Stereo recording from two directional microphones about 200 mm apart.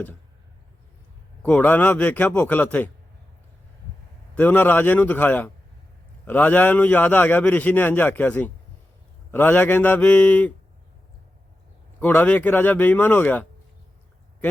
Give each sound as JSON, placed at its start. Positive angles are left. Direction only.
{"t": 1.4, "sound": "a man's voice", "side_deg": 10}
{"t": 4.4, "sound": "a man's voice", "side_deg": 10}
{"t": 11.9, "sound": "a man's voice", "side_deg": 10}